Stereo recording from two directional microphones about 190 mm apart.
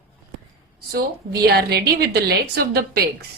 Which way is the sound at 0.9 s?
55° right (ahead or behind).